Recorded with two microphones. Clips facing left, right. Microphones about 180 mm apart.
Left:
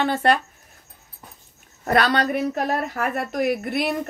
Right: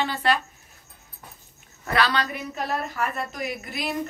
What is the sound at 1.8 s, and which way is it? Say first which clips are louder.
Speech: left 5 dB; 45° left (ahead or behind).